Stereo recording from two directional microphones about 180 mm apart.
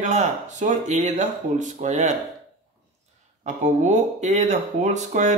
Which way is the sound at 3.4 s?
40° right (ahead or behind).